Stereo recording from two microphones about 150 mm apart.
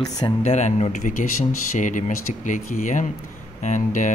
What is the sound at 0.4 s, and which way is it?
Speech, 50° left (ahead or behind).